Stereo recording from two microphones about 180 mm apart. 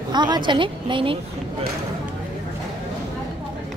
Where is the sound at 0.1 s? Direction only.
25° right (ahead or behind).